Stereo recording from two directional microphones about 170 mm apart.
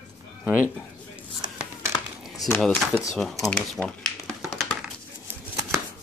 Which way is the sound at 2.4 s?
5° left (ahead or behind).